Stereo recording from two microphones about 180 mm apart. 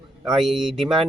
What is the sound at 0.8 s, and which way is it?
Speech, 30° right (ahead or behind).